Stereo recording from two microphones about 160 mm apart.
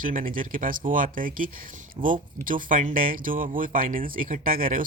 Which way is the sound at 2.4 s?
60° right (ahead or behind).